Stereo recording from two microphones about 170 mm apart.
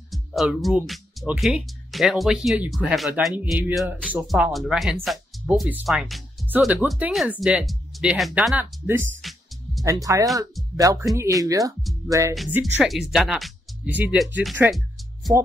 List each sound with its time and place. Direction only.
0.1 s speech: centre (ahead or behind)
9.2 s speech: centre (ahead or behind)
10.1 s speech: 15° right (ahead or behind)
12.8 s speech: centre (ahead or behind)